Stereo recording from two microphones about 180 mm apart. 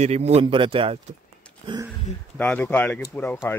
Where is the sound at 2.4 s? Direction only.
10° left (ahead or behind).